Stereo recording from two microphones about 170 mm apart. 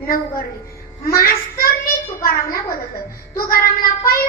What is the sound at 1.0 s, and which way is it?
Speech, 60° left (ahead or behind).